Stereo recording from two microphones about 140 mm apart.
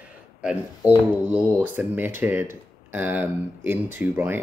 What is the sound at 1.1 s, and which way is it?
Speech, 10° right (ahead or behind).